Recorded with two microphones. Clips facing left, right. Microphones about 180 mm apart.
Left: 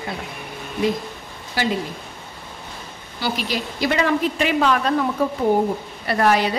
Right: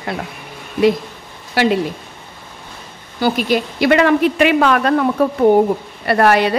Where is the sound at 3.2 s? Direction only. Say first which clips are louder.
Right 8 dB; 55° right (ahead or behind).